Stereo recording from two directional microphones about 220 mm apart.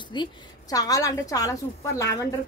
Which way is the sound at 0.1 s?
20° left (ahead or behind).